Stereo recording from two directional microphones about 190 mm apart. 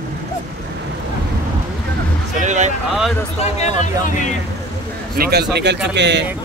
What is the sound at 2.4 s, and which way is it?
Speech, 40° right (ahead or behind).